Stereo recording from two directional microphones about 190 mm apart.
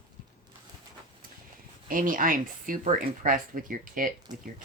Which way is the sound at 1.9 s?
45° right (ahead or behind).